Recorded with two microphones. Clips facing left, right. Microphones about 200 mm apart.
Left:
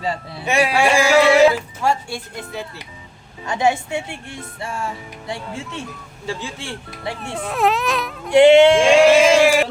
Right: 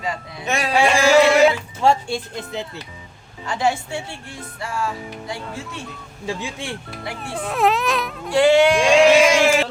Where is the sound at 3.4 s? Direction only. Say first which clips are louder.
Left 2 dB; 20° left (ahead or behind).